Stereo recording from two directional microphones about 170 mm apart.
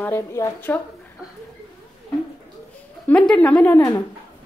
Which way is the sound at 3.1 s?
5° left (ahead or behind).